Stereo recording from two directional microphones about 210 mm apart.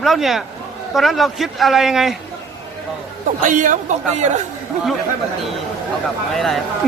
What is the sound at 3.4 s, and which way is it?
Speech, 40° right (ahead or behind).